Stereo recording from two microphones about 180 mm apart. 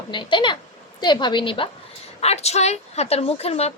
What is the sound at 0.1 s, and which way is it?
A woman's voice, 25° left (ahead or behind).